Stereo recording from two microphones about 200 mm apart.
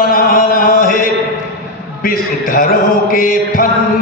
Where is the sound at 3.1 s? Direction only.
45° left (ahead or behind).